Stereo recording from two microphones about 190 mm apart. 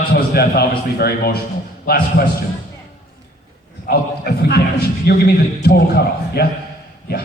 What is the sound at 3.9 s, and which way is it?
A man's voice, 55° left (ahead or behind).